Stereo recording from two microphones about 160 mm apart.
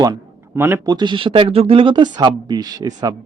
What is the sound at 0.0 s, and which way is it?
Speech, 20° right (ahead or behind).